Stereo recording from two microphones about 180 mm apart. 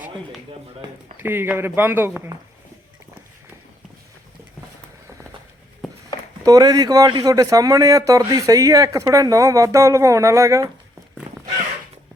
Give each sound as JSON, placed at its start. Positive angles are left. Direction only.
{"t": 1.1, "sound": "speech", "side_deg": -10}
{"t": 6.4, "sound": "speech", "side_deg": -20}